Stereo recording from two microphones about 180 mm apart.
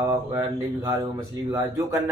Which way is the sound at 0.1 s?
15° right (ahead or behind).